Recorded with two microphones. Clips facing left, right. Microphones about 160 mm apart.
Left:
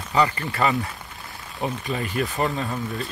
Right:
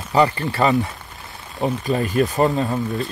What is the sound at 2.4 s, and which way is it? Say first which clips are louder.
Speech: right 6 dB; 20° right (ahead or behind).